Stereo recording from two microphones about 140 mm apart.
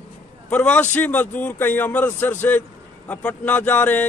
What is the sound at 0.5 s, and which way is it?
A man's voice, 10° left (ahead or behind).